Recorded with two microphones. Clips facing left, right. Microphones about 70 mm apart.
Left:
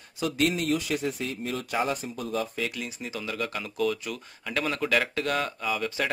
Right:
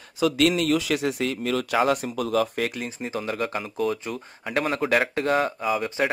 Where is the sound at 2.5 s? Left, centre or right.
Right.